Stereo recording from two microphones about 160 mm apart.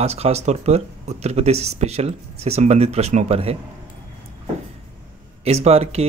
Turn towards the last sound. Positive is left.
turn(degrees=-40)  # may be behind; listen again after turning